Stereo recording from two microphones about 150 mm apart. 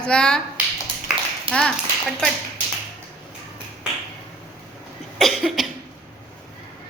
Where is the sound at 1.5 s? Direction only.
35° right (ahead or behind).